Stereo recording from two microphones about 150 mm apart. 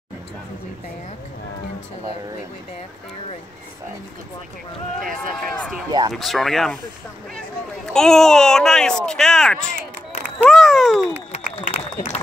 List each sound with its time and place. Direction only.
5.9 s speech: 30° right (ahead or behind)
6.1 s speech: centre (ahead or behind)
7.8 s speech: 5° left (ahead or behind)
11.3 s a sound: 50° left (ahead or behind)